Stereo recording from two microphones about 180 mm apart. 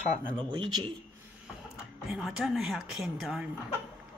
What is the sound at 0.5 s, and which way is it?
Speech, 30° right (ahead or behind).